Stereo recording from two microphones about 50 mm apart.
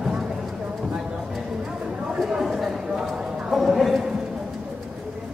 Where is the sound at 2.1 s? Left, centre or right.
Centre.